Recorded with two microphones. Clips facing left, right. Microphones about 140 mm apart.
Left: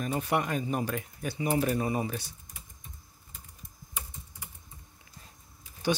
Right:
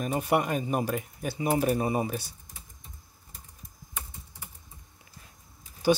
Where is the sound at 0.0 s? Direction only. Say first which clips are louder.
Right 3 dB; 10° right (ahead or behind).